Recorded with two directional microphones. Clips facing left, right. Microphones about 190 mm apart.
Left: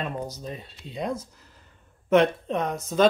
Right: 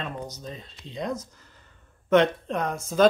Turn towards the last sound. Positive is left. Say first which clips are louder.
# even
turn(degrees=0)  # may be behind; listen again after turning